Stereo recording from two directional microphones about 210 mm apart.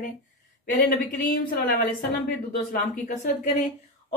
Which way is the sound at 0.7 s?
40° left (ahead or behind).